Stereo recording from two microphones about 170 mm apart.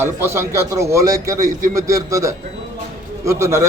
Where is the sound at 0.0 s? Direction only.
15° right (ahead or behind).